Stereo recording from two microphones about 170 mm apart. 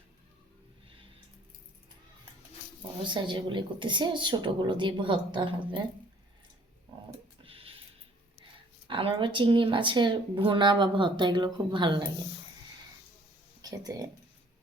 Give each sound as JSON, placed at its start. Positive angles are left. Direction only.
{"t": 3.0, "sound": "speech", "side_deg": -30}
{"t": 7.4, "sound": "a sound", "side_deg": -35}
{"t": 8.9, "sound": "speech", "side_deg": -30}
{"t": 13.6, "sound": "speech", "side_deg": -20}